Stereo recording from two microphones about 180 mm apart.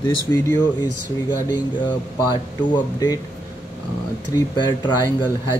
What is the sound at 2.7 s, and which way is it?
Speech, 20° left (ahead or behind).